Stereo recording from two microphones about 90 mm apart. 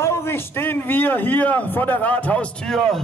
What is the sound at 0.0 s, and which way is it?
A man's voice, 30° left (ahead or behind).